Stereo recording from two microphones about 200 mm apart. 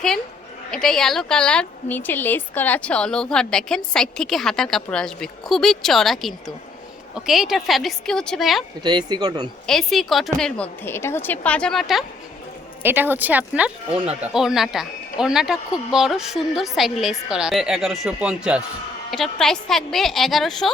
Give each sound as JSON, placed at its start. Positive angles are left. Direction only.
{"t": 0.7, "sound": "a woman's voice", "side_deg": 5}
{"t": 8.8, "sound": "speech", "side_deg": -20}
{"t": 9.6, "sound": "a woman's voice", "side_deg": 0}
{"t": 12.8, "sound": "a woman's voice", "side_deg": -10}